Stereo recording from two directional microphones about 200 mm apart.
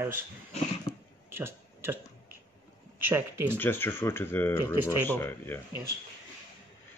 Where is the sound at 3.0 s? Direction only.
10° right (ahead or behind).